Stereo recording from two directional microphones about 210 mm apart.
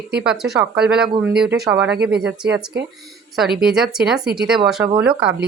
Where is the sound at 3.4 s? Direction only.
Centre (ahead or behind).